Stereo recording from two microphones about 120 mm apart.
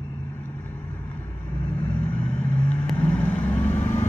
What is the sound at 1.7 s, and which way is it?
Vehicle, 15° left (ahead or behind).